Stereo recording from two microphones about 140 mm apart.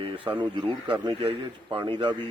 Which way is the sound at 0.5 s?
35° right (ahead or behind).